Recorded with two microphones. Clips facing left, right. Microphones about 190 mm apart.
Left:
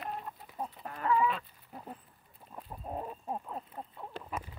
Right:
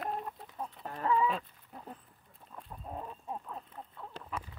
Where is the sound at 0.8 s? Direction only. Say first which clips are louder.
Right 1 dB; 30° right (ahead or behind).